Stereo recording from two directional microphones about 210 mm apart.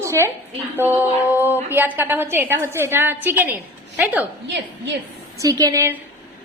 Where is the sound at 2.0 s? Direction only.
10° right (ahead or behind).